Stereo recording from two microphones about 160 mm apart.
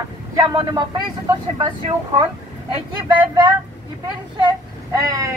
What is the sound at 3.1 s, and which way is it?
Speech, 30° right (ahead or behind).